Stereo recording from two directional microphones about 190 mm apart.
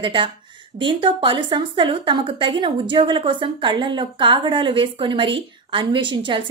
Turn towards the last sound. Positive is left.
turn(degrees=-25)  # may be behind; listen again after turning